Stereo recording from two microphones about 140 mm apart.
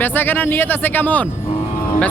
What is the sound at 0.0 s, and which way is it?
Speech, 15° left (ahead or behind).